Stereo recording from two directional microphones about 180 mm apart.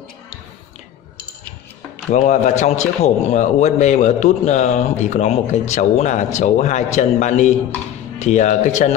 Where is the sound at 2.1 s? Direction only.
40° left (ahead or behind).